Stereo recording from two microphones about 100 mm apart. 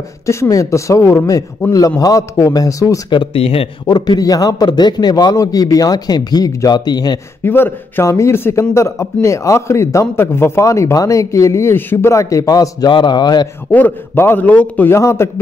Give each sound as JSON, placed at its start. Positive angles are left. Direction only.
{"t": 0.3, "sound": "a man's voice", "side_deg": 30}
{"t": 3.1, "sound": "speech", "side_deg": 65}
{"t": 3.8, "sound": "a man's voice", "side_deg": 45}
{"t": 7.4, "sound": "a man's voice", "side_deg": 20}
{"t": 13.7, "sound": "a man's voice", "side_deg": 20}
{"t": 15.0, "sound": "a man's voice", "side_deg": 30}